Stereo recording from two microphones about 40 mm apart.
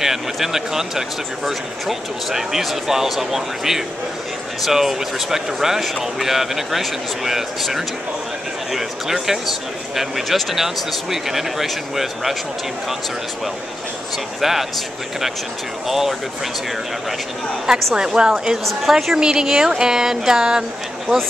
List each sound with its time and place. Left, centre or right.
0.0 s speech: centre
9.2 s speech: centre
14.4 s speech: centre
15.9 s speech: centre
17.9 s speech: centre
18.6 s a woman's voice: centre
19.1 s speech: centre